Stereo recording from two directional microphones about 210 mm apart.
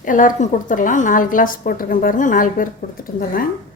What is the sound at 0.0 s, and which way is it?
A woman's voice, 40° left (ahead or behind).